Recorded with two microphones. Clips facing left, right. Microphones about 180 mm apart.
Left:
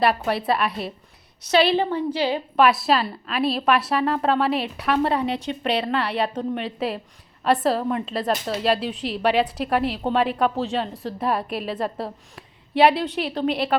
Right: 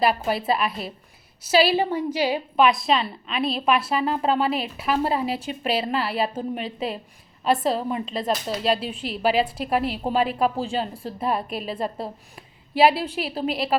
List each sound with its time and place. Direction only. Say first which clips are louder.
0.0 s a woman's voice: left 1 dB; centre (ahead or behind)
2.6 s a woman's voice: left 1 dB; 5° left (ahead or behind)